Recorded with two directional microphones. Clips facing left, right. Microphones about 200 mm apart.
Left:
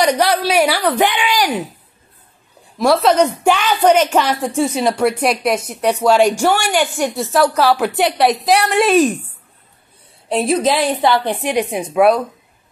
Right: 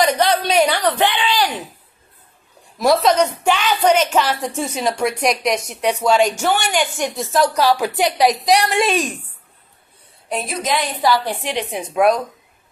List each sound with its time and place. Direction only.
0.0 s a woman's voice: 10° left (ahead or behind)
2.9 s a woman's voice: 10° left (ahead or behind)
10.3 s a woman's voice: 30° left (ahead or behind)
11.9 s a woman's voice: 5° left (ahead or behind)